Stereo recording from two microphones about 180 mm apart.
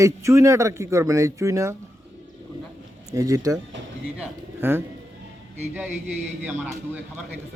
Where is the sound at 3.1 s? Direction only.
20° right (ahead or behind).